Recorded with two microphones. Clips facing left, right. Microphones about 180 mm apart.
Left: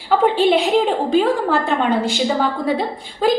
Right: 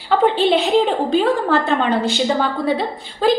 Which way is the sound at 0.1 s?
Centre (ahead or behind).